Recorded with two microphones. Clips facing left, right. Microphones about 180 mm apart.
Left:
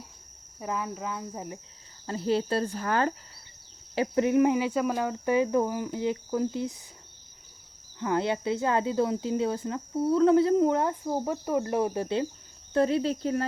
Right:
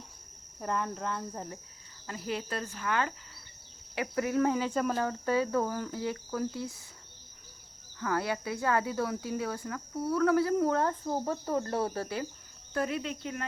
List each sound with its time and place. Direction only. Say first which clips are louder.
0.6 s speech: left 1 dB; 5° left (ahead or behind)
2.0 s speech: left 9 dB; 30° left (ahead or behind)
3.9 s speech: left 6 dB; 25° left (ahead or behind)
7.9 s speech: left 4 dB; 20° left (ahead or behind)